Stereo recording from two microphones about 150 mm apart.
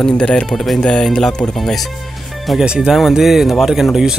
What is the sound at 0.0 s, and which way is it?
Speech, 5° left (ahead or behind).